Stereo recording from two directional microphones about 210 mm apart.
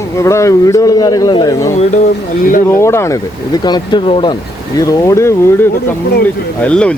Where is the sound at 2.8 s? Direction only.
15° left (ahead or behind).